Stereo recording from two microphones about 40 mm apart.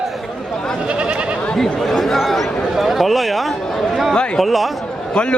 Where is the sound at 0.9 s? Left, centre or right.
Right.